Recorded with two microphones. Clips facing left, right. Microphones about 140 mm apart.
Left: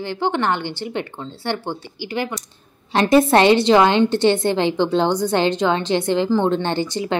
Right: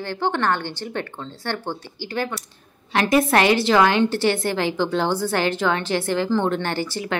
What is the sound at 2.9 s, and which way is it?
A woman's voice, 30° left (ahead or behind).